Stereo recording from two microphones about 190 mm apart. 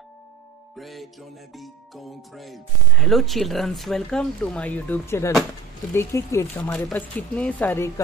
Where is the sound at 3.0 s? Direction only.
Centre (ahead or behind).